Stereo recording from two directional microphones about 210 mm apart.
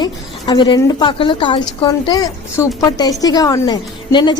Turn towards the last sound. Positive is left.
turn(degrees=20)  # may be behind; listen again after turning